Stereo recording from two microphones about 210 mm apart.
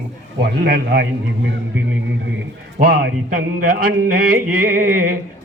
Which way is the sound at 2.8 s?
45° right (ahead or behind).